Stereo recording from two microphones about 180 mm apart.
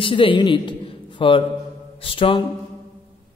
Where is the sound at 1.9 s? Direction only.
30° left (ahead or behind).